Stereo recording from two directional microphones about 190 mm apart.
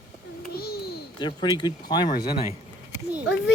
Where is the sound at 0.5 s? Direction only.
55° left (ahead or behind).